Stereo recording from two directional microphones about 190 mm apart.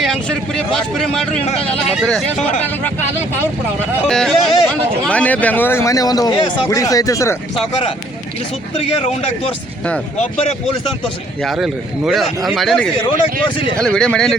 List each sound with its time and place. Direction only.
0.0 s a man's voice: 5° left (ahead or behind)
4.1 s speech: 5° left (ahead or behind)
8.7 s a man's voice: 30° left (ahead or behind)
11.4 s a man's voice: centre (ahead or behind)